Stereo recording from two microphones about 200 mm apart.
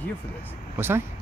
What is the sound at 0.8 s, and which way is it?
Speech, 10° right (ahead or behind).